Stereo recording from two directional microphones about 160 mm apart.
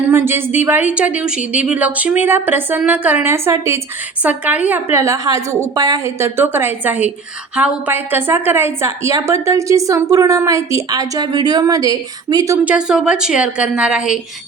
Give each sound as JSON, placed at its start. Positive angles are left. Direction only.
{"t": 0.1, "sound": "a woman's voice", "side_deg": -15}
{"t": 12.6, "sound": "a woman's voice", "side_deg": -5}